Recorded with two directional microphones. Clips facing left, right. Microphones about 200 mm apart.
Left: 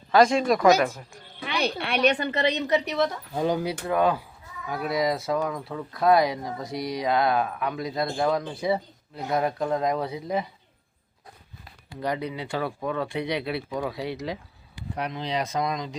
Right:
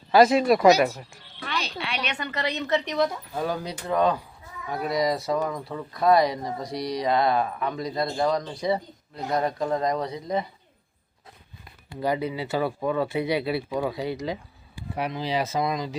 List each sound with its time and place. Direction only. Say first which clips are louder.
0.1 s speech: right 2 dB; 5° right (ahead or behind)
1.4 s a sound: left 2 dB; 15° left (ahead or behind)
1.6 s a woman's voice: left 6 dB; 55° left (ahead or behind)
2.0 s a woman's voice: left 10 dB; 30° left (ahead or behind); by 3.7 s 15° left (ahead or behind)
3.7 s speech: even; 5° left (ahead or behind)
11.9 s speech: right 3 dB; 5° right (ahead or behind)